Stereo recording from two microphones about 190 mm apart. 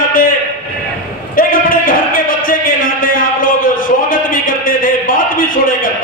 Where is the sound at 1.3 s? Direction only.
45° left (ahead or behind).